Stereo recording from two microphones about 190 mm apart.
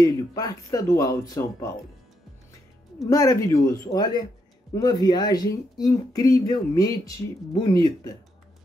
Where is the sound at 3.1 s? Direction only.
20° left (ahead or behind).